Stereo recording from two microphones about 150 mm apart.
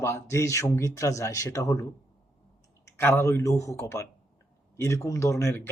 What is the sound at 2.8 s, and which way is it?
Speech, 15° left (ahead or behind).